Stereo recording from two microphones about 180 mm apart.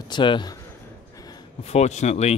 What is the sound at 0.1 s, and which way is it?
Speech, 25° left (ahead or behind).